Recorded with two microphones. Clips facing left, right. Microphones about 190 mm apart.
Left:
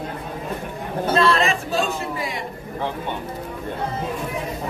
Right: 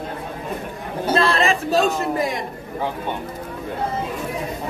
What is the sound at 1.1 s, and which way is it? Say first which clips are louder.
A man's voice: even; 35° right (ahead or behind).